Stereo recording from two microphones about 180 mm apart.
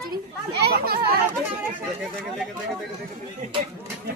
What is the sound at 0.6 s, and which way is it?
Speech, 60° right (ahead or behind).